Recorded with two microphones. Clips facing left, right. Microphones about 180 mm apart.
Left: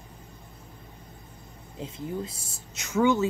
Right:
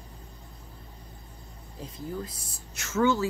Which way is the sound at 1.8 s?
25° left (ahead or behind).